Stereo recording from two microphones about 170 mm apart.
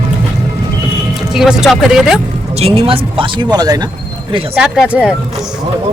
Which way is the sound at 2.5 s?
35° right (ahead or behind).